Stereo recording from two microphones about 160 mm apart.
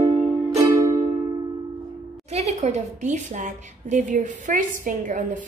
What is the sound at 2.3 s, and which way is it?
A woman's voice, 40° right (ahead or behind).